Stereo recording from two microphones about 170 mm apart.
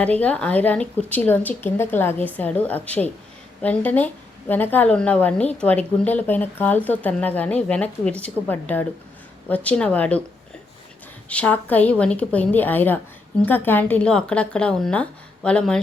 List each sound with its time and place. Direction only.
0.0 s a woman's voice: 10° left (ahead or behind)
11.3 s a woman's voice: 10° left (ahead or behind)